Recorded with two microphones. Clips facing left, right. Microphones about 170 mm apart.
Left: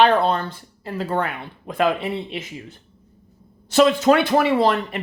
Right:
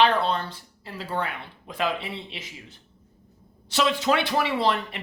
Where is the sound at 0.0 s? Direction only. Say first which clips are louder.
Left 5 dB; 50° left (ahead or behind).